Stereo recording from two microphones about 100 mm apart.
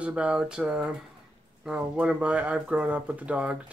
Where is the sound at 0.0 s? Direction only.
10° right (ahead or behind).